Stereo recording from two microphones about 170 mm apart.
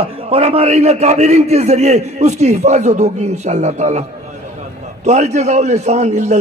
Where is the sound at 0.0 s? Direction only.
35° right (ahead or behind).